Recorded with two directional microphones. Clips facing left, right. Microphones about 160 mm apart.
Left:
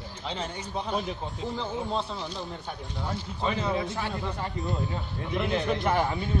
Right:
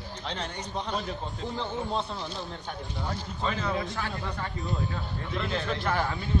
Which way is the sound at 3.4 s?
15° left (ahead or behind).